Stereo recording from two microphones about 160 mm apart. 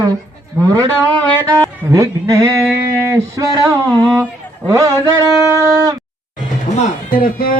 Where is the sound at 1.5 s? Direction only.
20° right (ahead or behind).